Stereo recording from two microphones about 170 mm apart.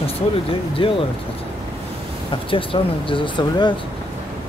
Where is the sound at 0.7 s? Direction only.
30° left (ahead or behind).